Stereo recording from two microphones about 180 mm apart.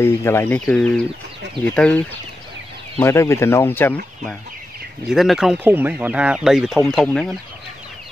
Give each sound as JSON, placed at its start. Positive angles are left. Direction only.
{"t": 0.0, "sound": "speech", "side_deg": 15}
{"t": 5.1, "sound": "speech", "side_deg": 0}